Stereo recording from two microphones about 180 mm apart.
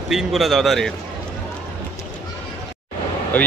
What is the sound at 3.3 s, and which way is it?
Speech, 10° left (ahead or behind).